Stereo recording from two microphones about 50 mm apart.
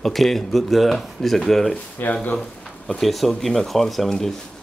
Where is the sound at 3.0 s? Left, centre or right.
Centre.